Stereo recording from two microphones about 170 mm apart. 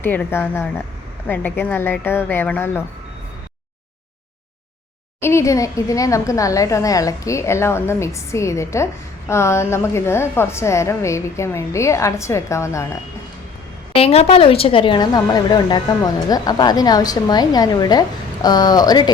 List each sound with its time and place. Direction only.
0.0 s a woman's voice: 10° left (ahead or behind)
5.2 s a woman's voice: 15° left (ahead or behind)
13.9 s a woman's voice: 35° left (ahead or behind)